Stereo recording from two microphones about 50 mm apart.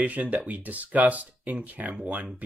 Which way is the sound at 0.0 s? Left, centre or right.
Right.